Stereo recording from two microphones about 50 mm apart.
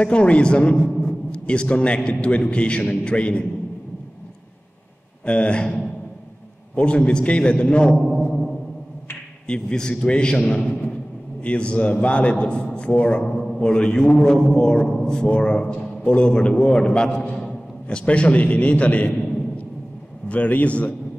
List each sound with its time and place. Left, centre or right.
0.0 s a man's voice: left
5.2 s a man's voice: left
8.1 s a sound: centre
9.5 s a man's voice: centre
10.6 s a man's voice: left; by 15.2 s centre
15.2 s a man's voice: left
20.2 s a man's voice: left